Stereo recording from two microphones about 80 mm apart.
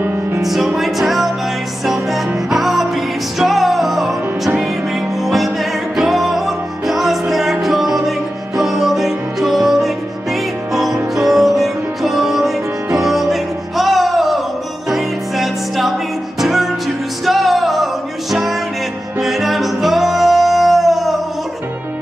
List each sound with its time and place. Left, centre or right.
0.4 s music: centre
5.2 s music: centre